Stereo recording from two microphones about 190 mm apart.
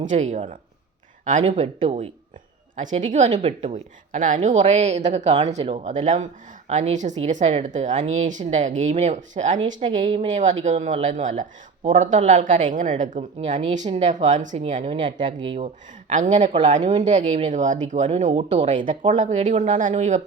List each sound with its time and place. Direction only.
0.0 s speech: 40° right (ahead or behind)